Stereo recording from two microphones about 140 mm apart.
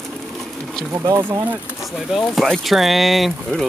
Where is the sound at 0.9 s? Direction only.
20° right (ahead or behind).